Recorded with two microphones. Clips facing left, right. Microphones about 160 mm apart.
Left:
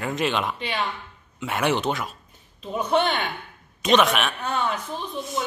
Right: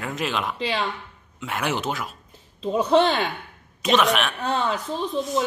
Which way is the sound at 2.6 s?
25° right (ahead or behind).